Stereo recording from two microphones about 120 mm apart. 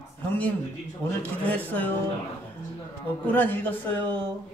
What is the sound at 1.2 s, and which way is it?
Speech, 15° left (ahead or behind).